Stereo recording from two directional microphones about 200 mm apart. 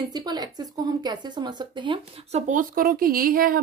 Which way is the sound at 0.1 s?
20° right (ahead or behind).